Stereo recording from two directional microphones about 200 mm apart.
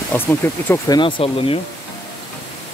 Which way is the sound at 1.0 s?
25° left (ahead or behind).